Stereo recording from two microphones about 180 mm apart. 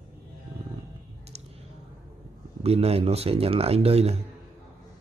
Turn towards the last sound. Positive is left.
turn(degrees=-35)  # may be behind; listen again after turning